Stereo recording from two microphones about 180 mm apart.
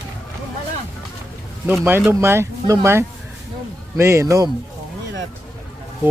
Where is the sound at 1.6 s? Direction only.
10° right (ahead or behind).